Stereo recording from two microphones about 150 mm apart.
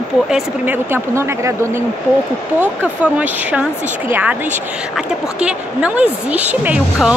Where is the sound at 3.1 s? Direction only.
10° right (ahead or behind).